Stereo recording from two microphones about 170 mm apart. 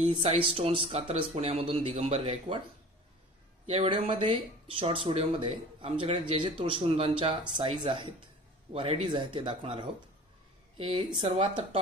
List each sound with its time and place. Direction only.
0.0 s speech: 35° right (ahead or behind)
3.6 s speech: 35° right (ahead or behind)